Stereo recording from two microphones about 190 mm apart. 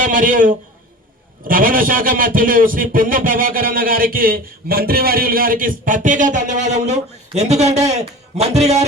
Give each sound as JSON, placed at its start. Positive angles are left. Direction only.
{"t": 0.0, "sound": "a man's voice", "side_deg": -45}